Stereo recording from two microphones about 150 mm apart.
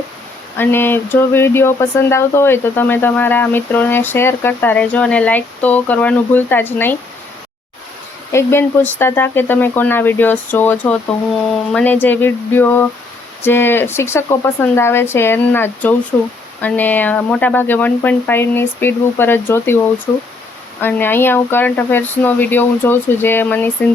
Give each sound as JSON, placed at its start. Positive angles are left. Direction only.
{"t": 0.5, "sound": "speech", "side_deg": 15}
{"t": 8.3, "sound": "speech", "side_deg": 15}
{"t": 20.8, "sound": "speech", "side_deg": 15}